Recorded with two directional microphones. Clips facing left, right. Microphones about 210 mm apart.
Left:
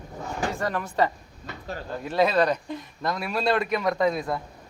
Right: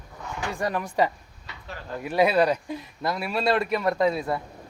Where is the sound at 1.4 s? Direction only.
40° left (ahead or behind).